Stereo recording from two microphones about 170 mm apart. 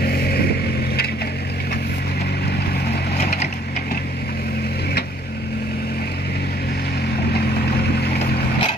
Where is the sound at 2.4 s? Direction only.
70° left (ahead or behind).